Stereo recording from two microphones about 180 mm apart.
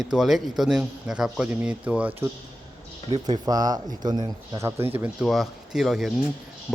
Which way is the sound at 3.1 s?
25° right (ahead or behind).